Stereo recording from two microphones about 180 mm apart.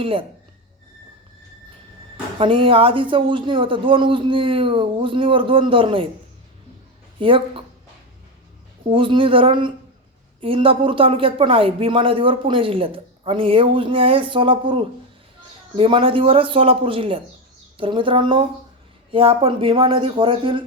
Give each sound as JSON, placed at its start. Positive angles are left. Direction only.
{"t": 0.0, "sound": "speech", "side_deg": -30}
{"t": 2.4, "sound": "speech", "side_deg": -30}
{"t": 7.2, "sound": "speech", "side_deg": -30}
{"t": 8.9, "sound": "speech", "side_deg": -30}